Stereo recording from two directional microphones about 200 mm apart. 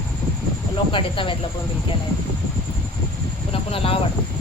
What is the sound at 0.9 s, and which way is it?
Speech, 25° left (ahead or behind).